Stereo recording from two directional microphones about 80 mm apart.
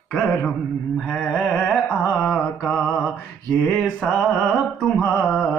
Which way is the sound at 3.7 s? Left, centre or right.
Centre.